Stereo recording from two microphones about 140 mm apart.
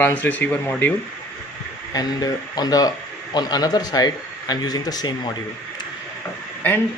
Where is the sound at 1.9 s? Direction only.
25° left (ahead or behind).